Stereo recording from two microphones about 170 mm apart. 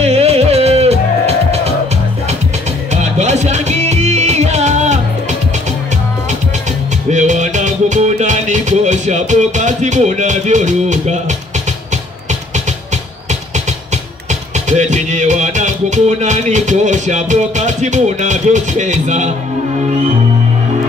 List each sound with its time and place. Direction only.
0.0 s music: 35° right (ahead or behind)
2.9 s music: 40° right (ahead or behind)
7.1 s music: 45° right (ahead or behind)
14.7 s music: 45° right (ahead or behind)